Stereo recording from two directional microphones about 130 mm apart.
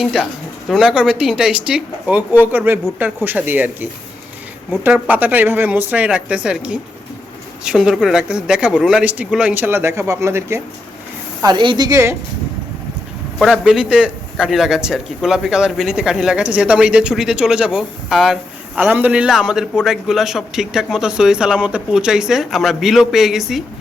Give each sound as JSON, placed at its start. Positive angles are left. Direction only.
{"t": 0.0, "sound": "a man's voice", "side_deg": 0}
{"t": 4.9, "sound": "speech", "side_deg": -15}
{"t": 11.4, "sound": "speech", "side_deg": -35}
{"t": 13.4, "sound": "a man's voice", "side_deg": -5}